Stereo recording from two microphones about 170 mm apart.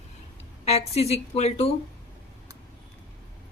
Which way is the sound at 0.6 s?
40° left (ahead or behind).